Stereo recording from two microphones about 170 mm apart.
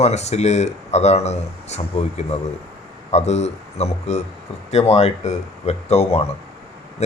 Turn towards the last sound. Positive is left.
turn(degrees=40)  # may be behind; listen again after turning